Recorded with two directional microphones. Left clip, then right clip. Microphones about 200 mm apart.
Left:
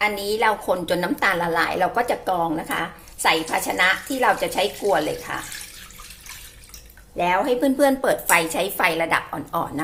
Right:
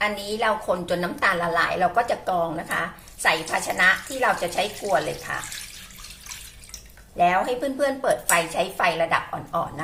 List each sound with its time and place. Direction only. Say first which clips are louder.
0.0 s a woman's voice: left 3 dB; 35° left (ahead or behind)
7.2 s a woman's voice: left 1 dB; 30° left (ahead or behind)